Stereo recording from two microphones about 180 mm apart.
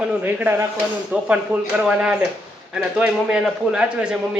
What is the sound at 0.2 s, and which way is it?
A man's voice, 10° right (ahead or behind).